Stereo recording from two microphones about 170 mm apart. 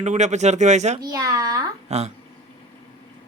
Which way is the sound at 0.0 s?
45° right (ahead or behind).